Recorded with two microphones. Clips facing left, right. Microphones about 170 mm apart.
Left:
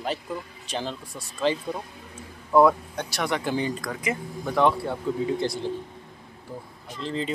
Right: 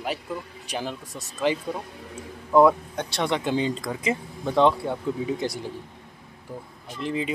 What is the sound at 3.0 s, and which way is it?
Speech, 25° right (ahead or behind).